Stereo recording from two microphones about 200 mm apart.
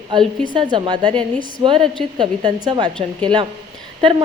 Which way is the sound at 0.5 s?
20° right (ahead or behind).